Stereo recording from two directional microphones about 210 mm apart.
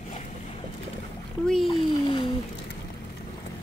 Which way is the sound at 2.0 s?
20° left (ahead or behind).